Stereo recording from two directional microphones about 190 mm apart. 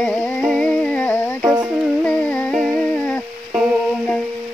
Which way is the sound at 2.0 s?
5° left (ahead or behind).